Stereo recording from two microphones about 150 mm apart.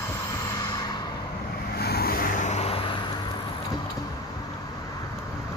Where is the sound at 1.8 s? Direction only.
90° left; by 2.9 s 40° left (ahead or behind).